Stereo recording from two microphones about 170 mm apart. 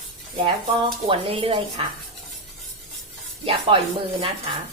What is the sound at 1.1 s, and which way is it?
Speech, 35° right (ahead or behind).